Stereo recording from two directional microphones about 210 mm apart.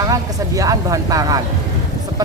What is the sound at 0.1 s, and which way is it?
Speech, 15° right (ahead or behind).